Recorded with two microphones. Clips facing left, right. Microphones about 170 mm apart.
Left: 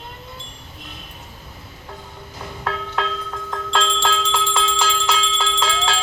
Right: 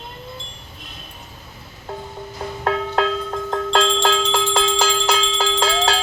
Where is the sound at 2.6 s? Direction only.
40° right (ahead or behind).